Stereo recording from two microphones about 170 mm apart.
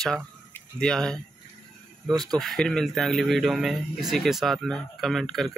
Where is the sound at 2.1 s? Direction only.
25° right (ahead or behind).